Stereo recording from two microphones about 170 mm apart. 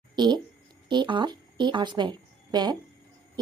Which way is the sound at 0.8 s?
30° right (ahead or behind).